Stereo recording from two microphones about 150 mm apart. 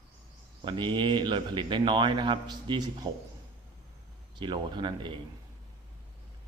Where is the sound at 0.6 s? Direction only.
30° right (ahead or behind).